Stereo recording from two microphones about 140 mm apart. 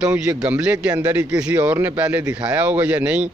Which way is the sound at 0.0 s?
20° right (ahead or behind).